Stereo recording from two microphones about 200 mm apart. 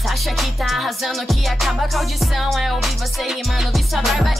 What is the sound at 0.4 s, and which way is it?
Speech, centre (ahead or behind).